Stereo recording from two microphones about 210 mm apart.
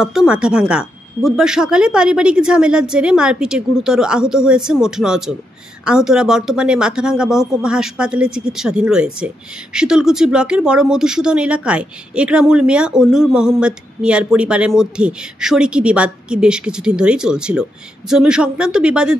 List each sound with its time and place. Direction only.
0.0 s speech: 5° right (ahead or behind)